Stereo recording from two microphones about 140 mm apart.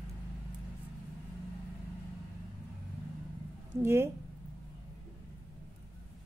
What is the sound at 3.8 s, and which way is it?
Speech, 15° right (ahead or behind).